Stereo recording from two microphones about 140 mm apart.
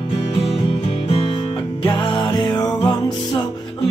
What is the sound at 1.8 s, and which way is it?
Music, 35° left (ahead or behind).